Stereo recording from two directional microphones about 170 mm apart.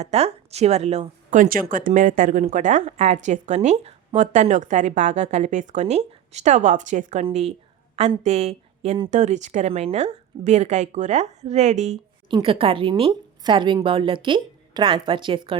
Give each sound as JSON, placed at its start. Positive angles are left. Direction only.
{"t": 0.0, "sound": "a woman's voice", "side_deg": -40}
{"t": 12.3, "sound": "a woman's voice", "side_deg": -30}